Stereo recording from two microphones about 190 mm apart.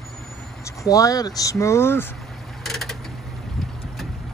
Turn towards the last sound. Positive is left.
turn(degrees=0)  # may be behind; listen again after turning